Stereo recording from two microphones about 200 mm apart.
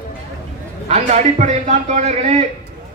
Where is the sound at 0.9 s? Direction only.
35° right (ahead or behind).